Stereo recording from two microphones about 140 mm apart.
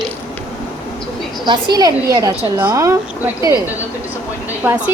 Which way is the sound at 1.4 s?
30° right (ahead or behind).